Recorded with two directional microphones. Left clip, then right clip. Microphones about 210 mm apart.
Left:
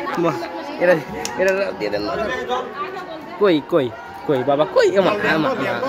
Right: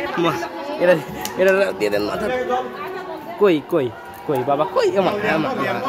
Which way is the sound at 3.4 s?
5° left (ahead or behind).